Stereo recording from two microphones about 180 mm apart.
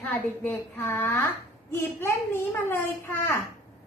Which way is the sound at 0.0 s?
15° left (ahead or behind).